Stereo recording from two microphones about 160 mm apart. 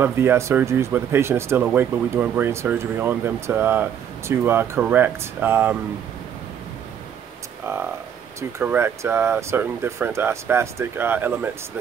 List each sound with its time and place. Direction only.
0.0 s speech: 15° right (ahead or behind)
7.7 s speech: 15° right (ahead or behind)